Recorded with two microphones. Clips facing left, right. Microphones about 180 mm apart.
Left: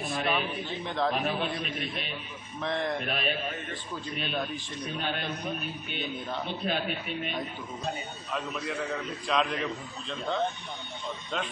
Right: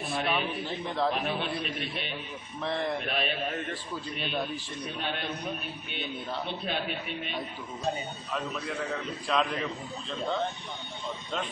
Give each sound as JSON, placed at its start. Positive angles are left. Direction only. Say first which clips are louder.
{"t": 0.1, "sound": "a man's voice", "louder": "right 1 dB", "side_deg": 0}